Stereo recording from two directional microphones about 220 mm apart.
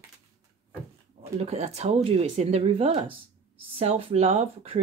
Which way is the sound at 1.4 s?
30° right (ahead or behind).